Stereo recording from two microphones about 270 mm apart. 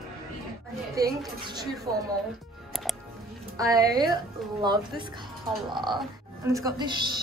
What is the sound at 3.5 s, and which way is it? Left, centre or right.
A woman's voice, centre.